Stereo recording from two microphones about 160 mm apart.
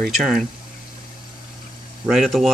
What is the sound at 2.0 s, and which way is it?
Speech, centre (ahead or behind).